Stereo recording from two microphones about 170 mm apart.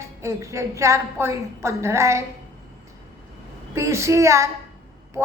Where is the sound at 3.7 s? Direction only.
15° right (ahead or behind).